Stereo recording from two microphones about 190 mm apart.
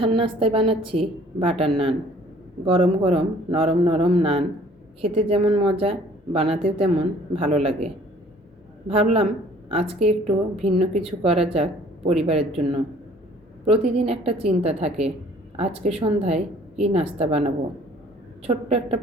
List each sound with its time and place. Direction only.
0.0 s a woman's voice: 30° right (ahead or behind)
8.9 s a woman's voice: 30° right (ahead or behind)
18.4 s speech: 30° right (ahead or behind)